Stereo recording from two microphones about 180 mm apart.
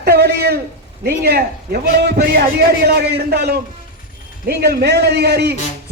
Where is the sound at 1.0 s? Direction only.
60° right (ahead or behind).